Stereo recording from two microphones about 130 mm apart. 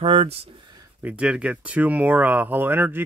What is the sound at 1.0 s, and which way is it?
Speech, 10° right (ahead or behind).